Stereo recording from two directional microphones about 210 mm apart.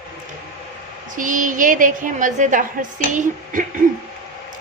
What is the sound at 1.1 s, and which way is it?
Speech, 40° right (ahead or behind).